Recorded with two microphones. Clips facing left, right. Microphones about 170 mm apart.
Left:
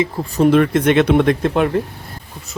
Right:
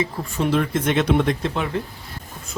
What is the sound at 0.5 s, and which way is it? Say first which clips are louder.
Speech: left 5 dB; 70° left (ahead or behind).